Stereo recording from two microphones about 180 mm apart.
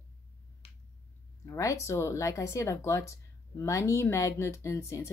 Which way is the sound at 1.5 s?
15° left (ahead or behind).